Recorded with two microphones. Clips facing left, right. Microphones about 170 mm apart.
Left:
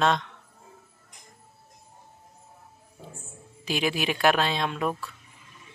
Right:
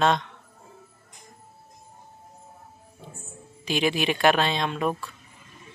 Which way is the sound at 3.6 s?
5° left (ahead or behind).